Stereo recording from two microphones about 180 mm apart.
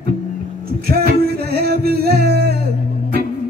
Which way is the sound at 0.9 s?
60° right (ahead or behind).